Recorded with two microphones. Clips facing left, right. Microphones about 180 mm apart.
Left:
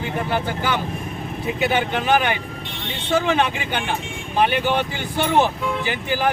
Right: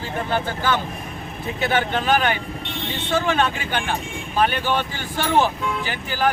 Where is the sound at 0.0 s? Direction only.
15° left (ahead or behind).